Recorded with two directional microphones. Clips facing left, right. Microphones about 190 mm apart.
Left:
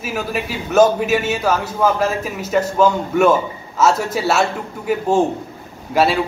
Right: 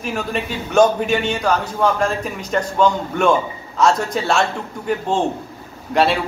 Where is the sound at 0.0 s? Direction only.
5° left (ahead or behind).